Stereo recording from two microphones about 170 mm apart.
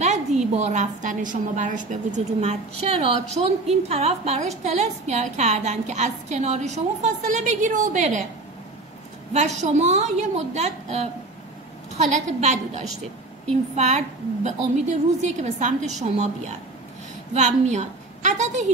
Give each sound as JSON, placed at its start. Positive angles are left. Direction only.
{"t": 0.0, "sound": "a woman's voice", "side_deg": -40}
{"t": 9.3, "sound": "a woman's voice", "side_deg": -40}
{"t": 17.4, "sound": "a woman's voice", "side_deg": -45}